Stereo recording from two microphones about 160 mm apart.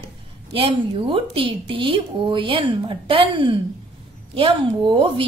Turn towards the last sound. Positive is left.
turn(degrees=-30)  # may be behind; listen again after turning